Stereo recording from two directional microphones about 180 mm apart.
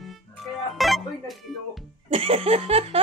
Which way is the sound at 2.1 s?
30° right (ahead or behind).